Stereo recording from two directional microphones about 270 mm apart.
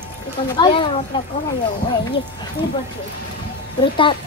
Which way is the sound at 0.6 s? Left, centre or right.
Centre.